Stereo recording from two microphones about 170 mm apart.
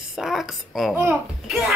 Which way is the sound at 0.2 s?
Centre (ahead or behind).